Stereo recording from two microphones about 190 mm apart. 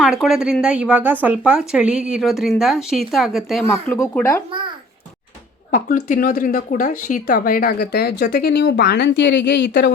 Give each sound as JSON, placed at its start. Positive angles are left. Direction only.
{"t": 0.0, "sound": "speech", "side_deg": -5}
{"t": 3.6, "sound": "speech", "side_deg": 10}
{"t": 5.7, "sound": "speech", "side_deg": 45}